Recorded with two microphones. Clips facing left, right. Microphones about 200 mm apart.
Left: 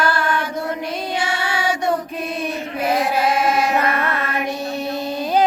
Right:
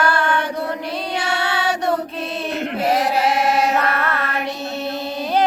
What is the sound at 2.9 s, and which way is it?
Chant, 75° right (ahead or behind).